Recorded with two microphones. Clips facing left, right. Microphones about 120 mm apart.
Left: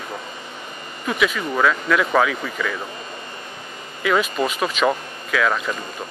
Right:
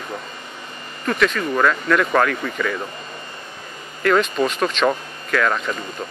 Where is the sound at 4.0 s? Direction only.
5° left (ahead or behind).